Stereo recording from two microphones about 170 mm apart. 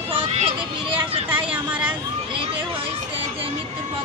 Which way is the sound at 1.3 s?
10° right (ahead or behind).